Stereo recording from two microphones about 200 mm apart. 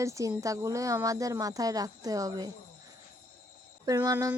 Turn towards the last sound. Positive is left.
turn(degrees=-15)  # may be behind; listen again after turning